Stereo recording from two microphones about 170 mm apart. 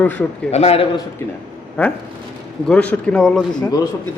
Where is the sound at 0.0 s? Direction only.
10° left (ahead or behind).